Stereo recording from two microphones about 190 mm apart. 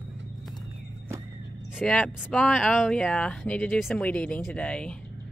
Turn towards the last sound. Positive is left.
turn(degrees=5)  # may be behind; listen again after turning